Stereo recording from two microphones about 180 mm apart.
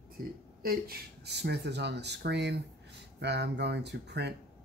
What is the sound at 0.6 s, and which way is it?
Speech, 55° right (ahead or behind).